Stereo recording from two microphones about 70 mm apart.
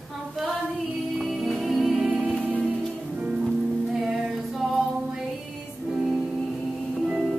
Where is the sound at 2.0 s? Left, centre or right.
Centre.